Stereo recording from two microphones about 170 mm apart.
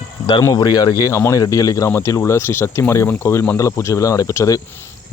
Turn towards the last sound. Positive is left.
turn(degrees=20)  # may be behind; listen again after turning